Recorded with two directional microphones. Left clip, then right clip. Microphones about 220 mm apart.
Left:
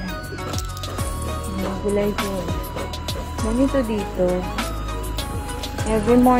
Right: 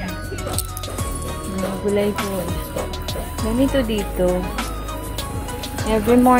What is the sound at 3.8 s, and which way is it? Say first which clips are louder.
Music: right 1 dB; 5° left (ahead or behind).